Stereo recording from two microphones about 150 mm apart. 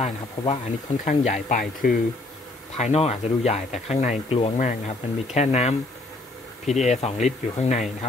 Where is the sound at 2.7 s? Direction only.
45° left (ahead or behind).